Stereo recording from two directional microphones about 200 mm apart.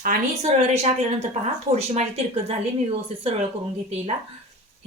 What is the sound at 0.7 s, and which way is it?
Speech, 30° right (ahead or behind).